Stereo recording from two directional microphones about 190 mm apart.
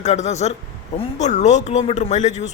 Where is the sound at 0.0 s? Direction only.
35° left (ahead or behind).